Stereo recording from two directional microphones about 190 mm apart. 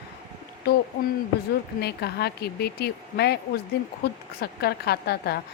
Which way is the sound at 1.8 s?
60° left (ahead or behind).